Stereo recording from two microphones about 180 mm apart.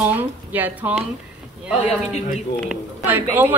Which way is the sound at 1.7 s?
35° left (ahead or behind).